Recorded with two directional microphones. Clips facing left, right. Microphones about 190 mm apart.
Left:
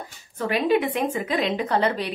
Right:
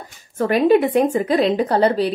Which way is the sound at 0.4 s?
45° right (ahead or behind).